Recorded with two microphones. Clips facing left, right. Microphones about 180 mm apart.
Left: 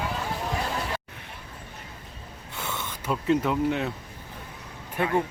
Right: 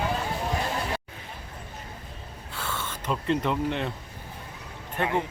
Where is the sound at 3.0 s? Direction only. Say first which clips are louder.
Left 2 dB; 5° left (ahead or behind).